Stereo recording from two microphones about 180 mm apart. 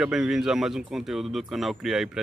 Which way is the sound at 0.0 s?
5° right (ahead or behind).